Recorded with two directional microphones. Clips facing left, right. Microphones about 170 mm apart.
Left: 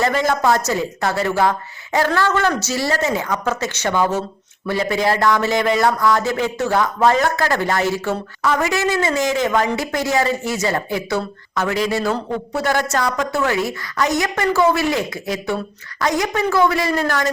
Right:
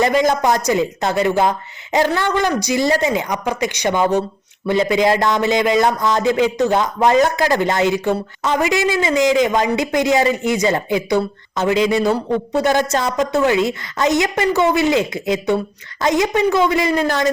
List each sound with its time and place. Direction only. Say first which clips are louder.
0.0 s speech: right 3 dB; 20° right (ahead or behind)